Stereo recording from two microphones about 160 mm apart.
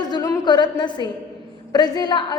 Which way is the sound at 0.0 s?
25° left (ahead or behind).